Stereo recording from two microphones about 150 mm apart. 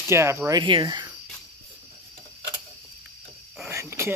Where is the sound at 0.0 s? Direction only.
20° right (ahead or behind).